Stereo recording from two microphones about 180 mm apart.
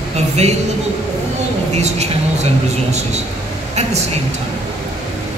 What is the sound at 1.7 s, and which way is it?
A man's voice, 35° right (ahead or behind).